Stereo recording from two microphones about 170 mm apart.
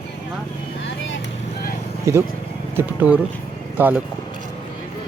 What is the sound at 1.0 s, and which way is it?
Vehicle, 90° left.